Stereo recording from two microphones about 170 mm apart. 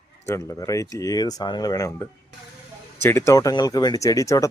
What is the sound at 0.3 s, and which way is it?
Speech, 15° left (ahead or behind).